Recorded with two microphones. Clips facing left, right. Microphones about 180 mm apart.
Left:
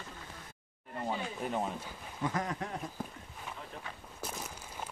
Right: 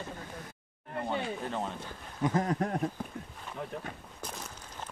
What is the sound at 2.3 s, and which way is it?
Speech, 25° right (ahead or behind).